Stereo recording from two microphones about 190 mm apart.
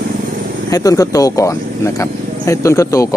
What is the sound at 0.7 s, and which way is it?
Speech, 20° left (ahead or behind).